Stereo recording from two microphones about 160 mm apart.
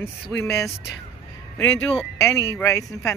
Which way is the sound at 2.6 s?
20° left (ahead or behind).